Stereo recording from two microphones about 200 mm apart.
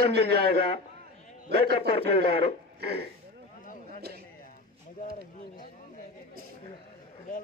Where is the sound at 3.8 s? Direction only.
50° right (ahead or behind).